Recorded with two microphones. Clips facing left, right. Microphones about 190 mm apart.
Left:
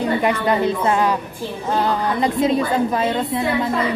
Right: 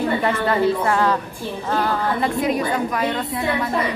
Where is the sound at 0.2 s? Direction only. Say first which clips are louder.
Left 1 dB; 15° left (ahead or behind).